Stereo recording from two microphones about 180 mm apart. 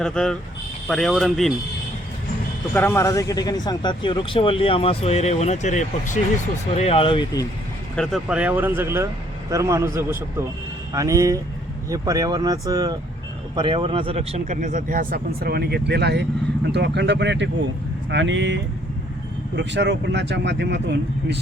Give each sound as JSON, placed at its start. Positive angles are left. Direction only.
{"t": 0.0, "sound": "speech", "side_deg": 5}
{"t": 2.7, "sound": "speech", "side_deg": 15}
{"t": 7.9, "sound": "speech", "side_deg": 0}
{"t": 18.1, "sound": "speech", "side_deg": -85}